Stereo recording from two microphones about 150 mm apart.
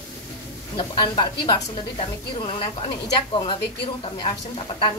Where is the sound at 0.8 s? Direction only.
30° left (ahead or behind).